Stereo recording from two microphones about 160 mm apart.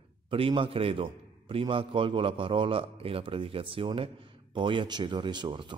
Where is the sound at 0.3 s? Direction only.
35° right (ahead or behind).